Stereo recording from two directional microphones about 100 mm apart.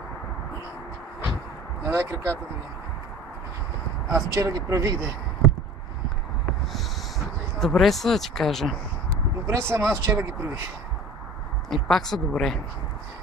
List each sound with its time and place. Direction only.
1.9 s speech: 25° right (ahead or behind)
4.4 s speech: 35° right (ahead or behind)
6.7 s a sound: centre (ahead or behind)
9.5 s speech: 25° right (ahead or behind)
11.7 s a woman's voice: 5° left (ahead or behind)